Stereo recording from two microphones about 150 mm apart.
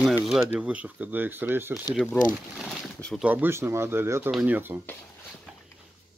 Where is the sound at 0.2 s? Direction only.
5° right (ahead or behind).